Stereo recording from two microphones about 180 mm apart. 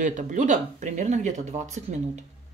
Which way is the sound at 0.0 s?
45° right (ahead or behind).